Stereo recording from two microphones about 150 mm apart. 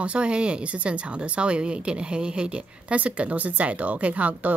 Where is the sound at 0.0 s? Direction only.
10° right (ahead or behind).